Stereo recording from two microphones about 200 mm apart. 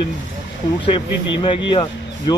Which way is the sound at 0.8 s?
25° left (ahead or behind).